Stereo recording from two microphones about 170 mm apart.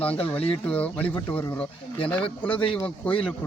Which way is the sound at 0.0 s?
10° left (ahead or behind).